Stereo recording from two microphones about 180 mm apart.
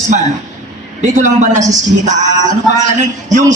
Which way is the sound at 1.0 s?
40° right (ahead or behind).